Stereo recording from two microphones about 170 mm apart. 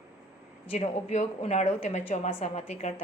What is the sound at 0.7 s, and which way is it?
A woman's voice, 40° left (ahead or behind).